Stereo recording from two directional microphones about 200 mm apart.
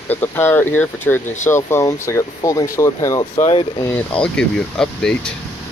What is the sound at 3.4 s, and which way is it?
Speech, 30° left (ahead or behind).